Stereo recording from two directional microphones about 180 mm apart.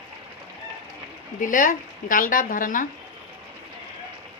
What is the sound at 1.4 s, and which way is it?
Speech, 50° left (ahead or behind).